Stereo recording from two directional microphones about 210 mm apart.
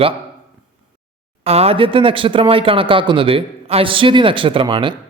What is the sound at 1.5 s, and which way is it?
Speech, 30° right (ahead or behind).